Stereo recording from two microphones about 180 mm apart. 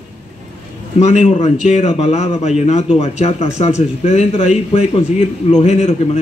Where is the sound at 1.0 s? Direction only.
40° left (ahead or behind).